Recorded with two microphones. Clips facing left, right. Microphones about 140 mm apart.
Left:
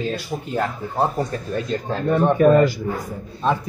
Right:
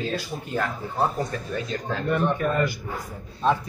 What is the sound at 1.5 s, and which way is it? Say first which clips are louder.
Speech: left 5 dB; 40° left (ahead or behind).